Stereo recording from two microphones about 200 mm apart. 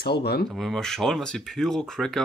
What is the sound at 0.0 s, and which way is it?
Speech, 55° left (ahead or behind).